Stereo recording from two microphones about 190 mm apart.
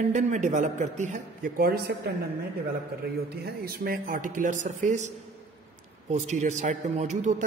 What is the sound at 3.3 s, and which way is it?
Speech, 55° right (ahead or behind).